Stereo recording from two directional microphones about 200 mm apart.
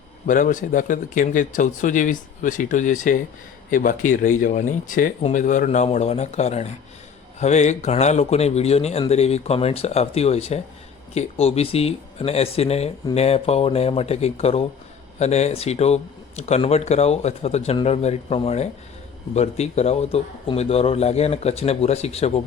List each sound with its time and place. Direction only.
0.3 s a man's voice: 40° left (ahead or behind)